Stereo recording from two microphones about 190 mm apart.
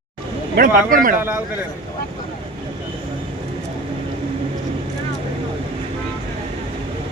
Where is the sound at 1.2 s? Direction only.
10° right (ahead or behind).